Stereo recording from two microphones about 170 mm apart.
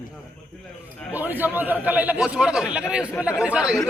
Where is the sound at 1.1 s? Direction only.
10° right (ahead or behind).